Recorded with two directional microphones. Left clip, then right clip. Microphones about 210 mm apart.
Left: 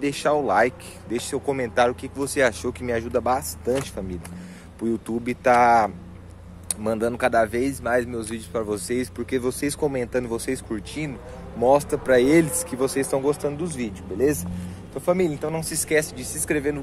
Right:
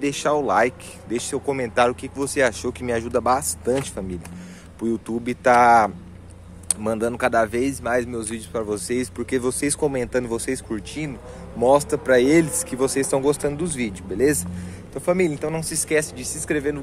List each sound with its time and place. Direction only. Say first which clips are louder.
0.0 s speech: right 1 dB; 5° right (ahead or behind)
4.7 s speech: right 1 dB; 5° right (ahead or behind)